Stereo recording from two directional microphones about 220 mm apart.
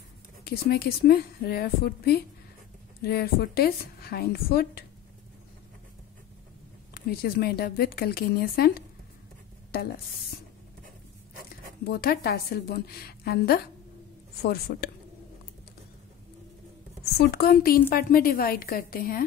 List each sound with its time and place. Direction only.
0.4 s a woman's voice: 45° left (ahead or behind)
6.9 s a woman's voice: 45° left (ahead or behind)
11.8 s a woman's voice: 45° left (ahead or behind)
17.0 s a woman's voice: 45° left (ahead or behind)